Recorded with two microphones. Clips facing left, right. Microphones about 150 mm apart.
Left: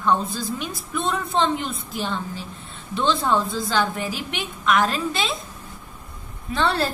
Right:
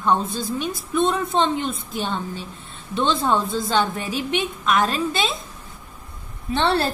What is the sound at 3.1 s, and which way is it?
A woman's voice, 25° right (ahead or behind).